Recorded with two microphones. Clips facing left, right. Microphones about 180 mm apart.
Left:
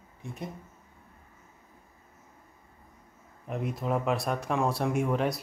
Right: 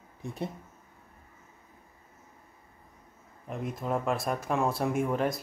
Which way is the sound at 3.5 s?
Centre (ahead or behind).